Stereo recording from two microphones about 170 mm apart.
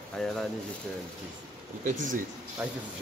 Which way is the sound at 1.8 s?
50° right (ahead or behind).